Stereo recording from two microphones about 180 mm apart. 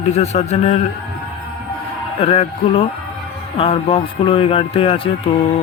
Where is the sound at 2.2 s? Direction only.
30° left (ahead or behind).